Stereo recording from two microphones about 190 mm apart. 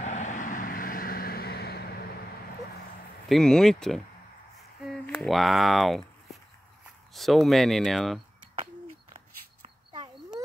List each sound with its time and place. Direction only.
0.0 s vehicle: 40° left (ahead or behind)
3.3 s speech: centre (ahead or behind)
7.2 s speech: centre (ahead or behind)